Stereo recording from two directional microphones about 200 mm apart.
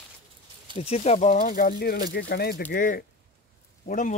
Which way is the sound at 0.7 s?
30° left (ahead or behind).